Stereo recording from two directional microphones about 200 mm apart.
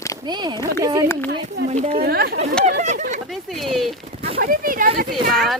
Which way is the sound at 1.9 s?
50° right (ahead or behind).